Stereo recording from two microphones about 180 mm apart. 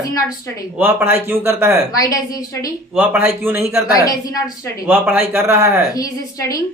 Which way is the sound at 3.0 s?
10° right (ahead or behind).